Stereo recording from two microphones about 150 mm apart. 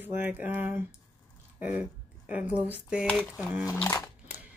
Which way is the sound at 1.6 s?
10° right (ahead or behind).